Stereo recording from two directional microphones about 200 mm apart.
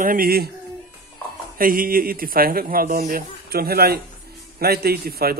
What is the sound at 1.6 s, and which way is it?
Speech, 45° right (ahead or behind).